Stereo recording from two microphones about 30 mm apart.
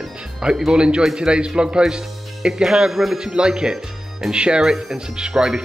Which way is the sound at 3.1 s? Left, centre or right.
Right.